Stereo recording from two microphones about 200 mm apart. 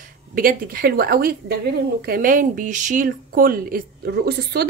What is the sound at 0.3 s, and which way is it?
Speech, 45° right (ahead or behind).